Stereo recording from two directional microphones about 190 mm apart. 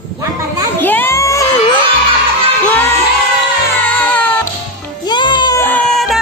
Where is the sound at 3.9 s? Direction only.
10° left (ahead or behind).